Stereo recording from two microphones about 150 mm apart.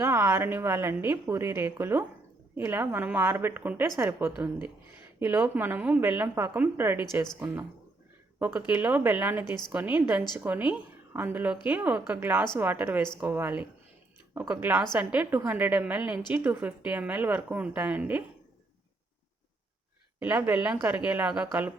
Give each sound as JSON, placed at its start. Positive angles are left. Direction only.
{"t": 0.0, "sound": "a woman's voice", "side_deg": -15}
{"t": 20.4, "sound": "a woman's voice", "side_deg": -10}